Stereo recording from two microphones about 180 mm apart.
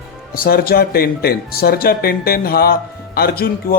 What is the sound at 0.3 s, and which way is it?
A man's voice, 55° left (ahead or behind).